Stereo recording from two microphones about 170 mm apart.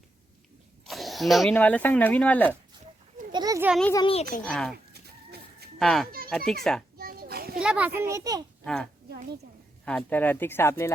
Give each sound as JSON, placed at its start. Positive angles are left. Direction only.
{"t": 0.9, "sound": "a sound", "side_deg": 0}
{"t": 1.5, "sound": "speech", "side_deg": 10}
{"t": 3.3, "sound": "a sound", "side_deg": -20}
{"t": 3.9, "sound": "a child's voice", "side_deg": 30}
{"t": 4.4, "sound": "speech", "side_deg": 5}
{"t": 4.7, "sound": "chicken", "side_deg": -65}
{"t": 5.8, "sound": "speech", "side_deg": 0}
{"t": 6.1, "sound": "children playing", "side_deg": -60}
{"t": 6.3, "sound": "speech", "side_deg": 5}
{"t": 7.0, "sound": "children playing", "side_deg": -60}
{"t": 7.6, "sound": "speech", "side_deg": -5}
{"t": 8.0, "sound": "a child's voice", "side_deg": -20}
{"t": 8.6, "sound": "speech", "side_deg": 5}